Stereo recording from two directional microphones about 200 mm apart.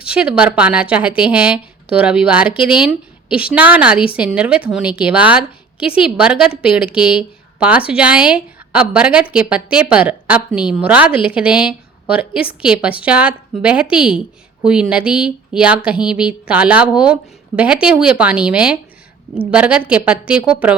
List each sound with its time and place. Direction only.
0.0 s a woman's voice: 5° right (ahead or behind)